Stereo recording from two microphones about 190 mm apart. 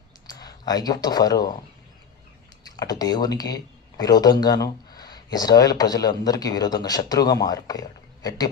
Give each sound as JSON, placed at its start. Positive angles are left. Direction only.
{"t": 0.3, "sound": "speech", "side_deg": 20}
{"t": 2.6, "sound": "speech", "side_deg": 20}